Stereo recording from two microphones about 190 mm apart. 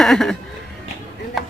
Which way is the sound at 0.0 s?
Centre (ahead or behind).